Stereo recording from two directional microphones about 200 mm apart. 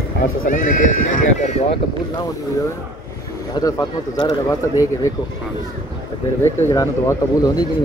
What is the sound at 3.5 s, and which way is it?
Speech, 20° left (ahead or behind).